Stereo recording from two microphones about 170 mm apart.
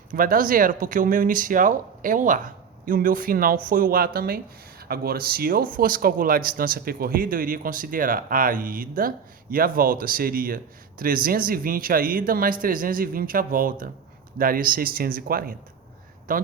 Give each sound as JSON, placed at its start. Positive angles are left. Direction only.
{"t": 0.1, "sound": "speech", "side_deg": -55}